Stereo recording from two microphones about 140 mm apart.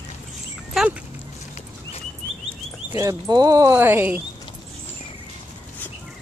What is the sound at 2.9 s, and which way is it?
Speech, 25° right (ahead or behind).